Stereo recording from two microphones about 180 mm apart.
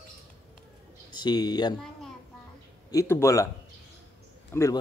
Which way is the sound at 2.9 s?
15° left (ahead or behind).